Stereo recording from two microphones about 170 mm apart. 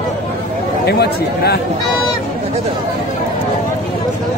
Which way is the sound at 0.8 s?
70° left (ahead or behind).